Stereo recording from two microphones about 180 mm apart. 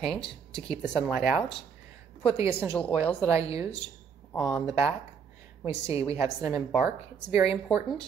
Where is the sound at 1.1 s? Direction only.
10° right (ahead or behind).